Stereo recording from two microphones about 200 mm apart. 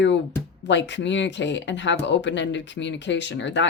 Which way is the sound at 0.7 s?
60° left (ahead or behind).